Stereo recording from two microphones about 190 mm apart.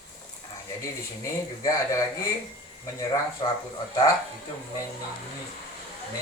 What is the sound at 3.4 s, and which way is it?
Speech, 30° left (ahead or behind).